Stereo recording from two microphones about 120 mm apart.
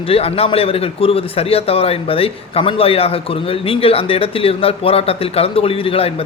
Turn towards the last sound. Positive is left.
turn(degrees=50)  # may be behind; listen again after turning